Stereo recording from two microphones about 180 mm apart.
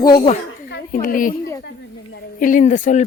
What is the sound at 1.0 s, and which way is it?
Speech, 50° left (ahead or behind).